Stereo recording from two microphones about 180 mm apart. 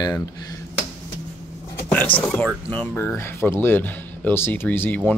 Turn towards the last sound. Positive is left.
turn(degrees=10)  # may be behind; listen again after turning